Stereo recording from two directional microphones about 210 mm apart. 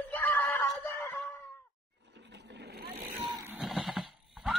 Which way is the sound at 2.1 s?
55° right (ahead or behind).